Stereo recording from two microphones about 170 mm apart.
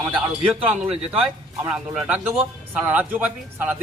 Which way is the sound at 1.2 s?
5° right (ahead or behind).